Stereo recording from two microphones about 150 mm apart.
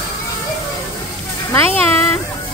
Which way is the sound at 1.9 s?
15° left (ahead or behind).